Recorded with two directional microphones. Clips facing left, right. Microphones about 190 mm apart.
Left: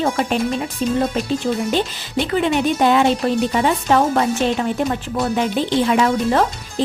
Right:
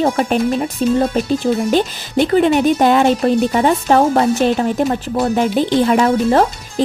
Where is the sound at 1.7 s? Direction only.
45° right (ahead or behind).